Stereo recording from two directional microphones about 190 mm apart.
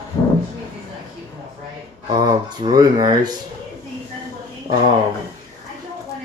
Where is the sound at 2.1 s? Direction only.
20° right (ahead or behind).